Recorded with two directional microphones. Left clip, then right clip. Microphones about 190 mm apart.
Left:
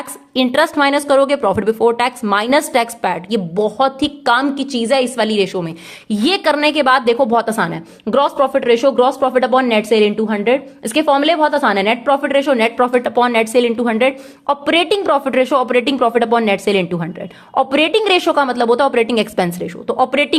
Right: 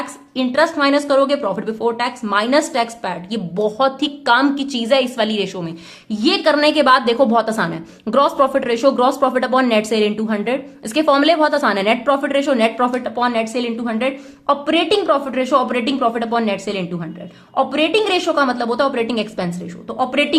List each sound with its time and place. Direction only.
0.3 s speech: 45° left (ahead or behind)
6.1 s a woman's voice: 45° left (ahead or behind)